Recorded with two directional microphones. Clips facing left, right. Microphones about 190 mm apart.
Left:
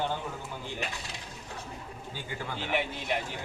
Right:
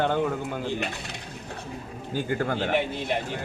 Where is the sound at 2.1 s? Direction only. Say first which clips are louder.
Right 12 dB; 55° right (ahead or behind).